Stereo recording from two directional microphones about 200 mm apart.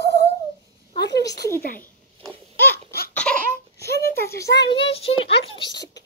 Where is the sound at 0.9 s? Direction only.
55° left (ahead or behind).